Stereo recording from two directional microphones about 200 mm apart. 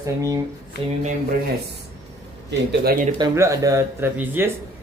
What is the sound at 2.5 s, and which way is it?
Speech, 50° right (ahead or behind).